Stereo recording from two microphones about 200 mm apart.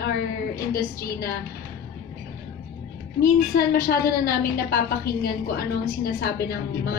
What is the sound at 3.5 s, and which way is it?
A woman's voice, 50° left (ahead or behind).